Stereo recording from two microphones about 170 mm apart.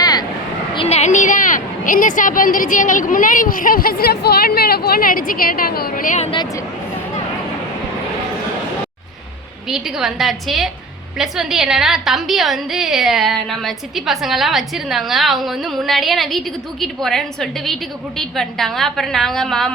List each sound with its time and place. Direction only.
0.0 s a sound: 20° left (ahead or behind)
0.7 s a woman's voice: 35° left (ahead or behind); by 6.2 s 50° left (ahead or behind)
9.6 s a woman's voice: centre (ahead or behind)